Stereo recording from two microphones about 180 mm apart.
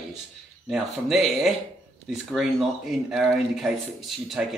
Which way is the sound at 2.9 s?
Centre (ahead or behind).